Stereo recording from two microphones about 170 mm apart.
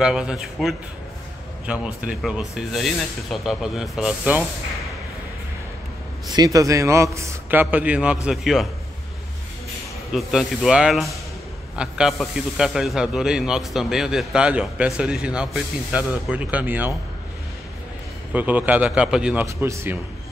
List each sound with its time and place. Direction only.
0.0 s speech: 5° right (ahead or behind)
6.2 s a man's voice: 25° right (ahead or behind); by 8.6 s 5° right (ahead or behind)
10.1 s speech: centre (ahead or behind)
18.3 s a man's voice: 10° right (ahead or behind)
19.4 s a man's voice: 15° right (ahead or behind)